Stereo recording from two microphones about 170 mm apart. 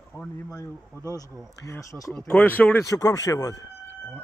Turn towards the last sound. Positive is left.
turn(degrees=20)  # may be behind; listen again after turning